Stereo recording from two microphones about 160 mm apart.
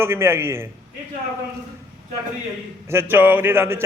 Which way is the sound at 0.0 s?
15° right (ahead or behind).